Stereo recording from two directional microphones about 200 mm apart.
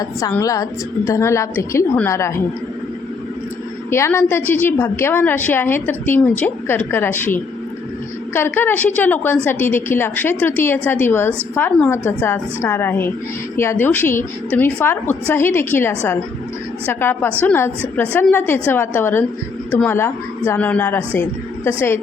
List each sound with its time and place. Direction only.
0.0 s a woman's voice: 15° left (ahead or behind)
3.8 s a woman's voice: 10° left (ahead or behind)